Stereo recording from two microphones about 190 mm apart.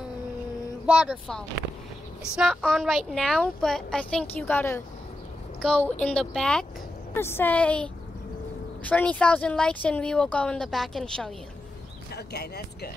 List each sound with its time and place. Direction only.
0.8 s speech: 5° right (ahead or behind)
2.3 s speech: centre (ahead or behind)
12.1 s speech: 55° left (ahead or behind)